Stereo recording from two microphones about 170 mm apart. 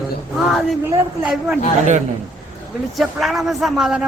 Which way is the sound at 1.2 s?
5° right (ahead or behind).